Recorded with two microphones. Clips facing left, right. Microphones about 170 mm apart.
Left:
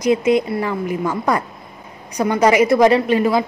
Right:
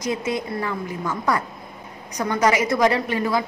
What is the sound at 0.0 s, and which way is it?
Speech, 15° left (ahead or behind).